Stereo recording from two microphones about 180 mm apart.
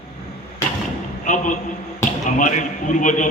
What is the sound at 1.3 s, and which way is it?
A man's voice, 45° left (ahead or behind).